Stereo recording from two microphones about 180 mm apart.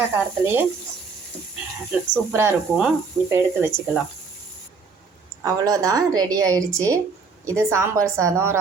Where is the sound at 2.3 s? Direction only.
15° right (ahead or behind).